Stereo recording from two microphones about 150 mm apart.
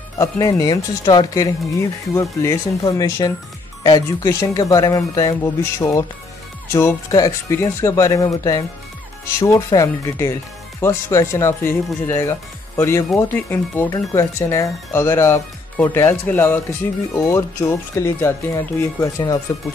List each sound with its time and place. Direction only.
0.2 s speech: 25° left (ahead or behind)